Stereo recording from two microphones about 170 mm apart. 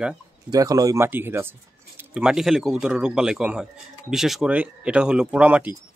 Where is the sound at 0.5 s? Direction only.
20° right (ahead or behind).